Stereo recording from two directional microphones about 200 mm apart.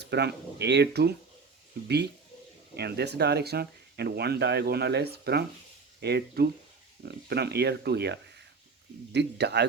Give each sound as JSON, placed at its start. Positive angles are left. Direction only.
{"t": 0.0, "sound": "speech", "side_deg": -55}
{"t": 2.7, "sound": "speech", "side_deg": -55}